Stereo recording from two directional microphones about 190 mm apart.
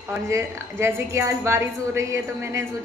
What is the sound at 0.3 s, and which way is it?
A woman's voice, 15° right (ahead or behind).